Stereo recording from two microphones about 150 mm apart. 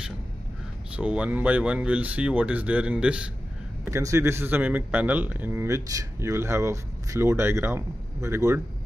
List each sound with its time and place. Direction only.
0.9 s speech: 10° right (ahead or behind)
3.8 s speech: 20° right (ahead or behind)